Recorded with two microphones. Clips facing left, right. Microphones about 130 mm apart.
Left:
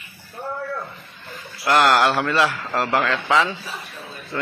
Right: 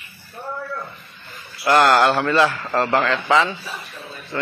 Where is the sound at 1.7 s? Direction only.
Centre (ahead or behind).